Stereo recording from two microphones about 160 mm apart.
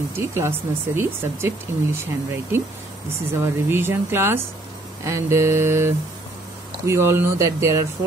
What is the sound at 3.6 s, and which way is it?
Speech, 15° right (ahead or behind).